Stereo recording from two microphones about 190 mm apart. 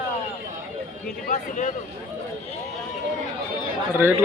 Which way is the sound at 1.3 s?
40° left (ahead or behind).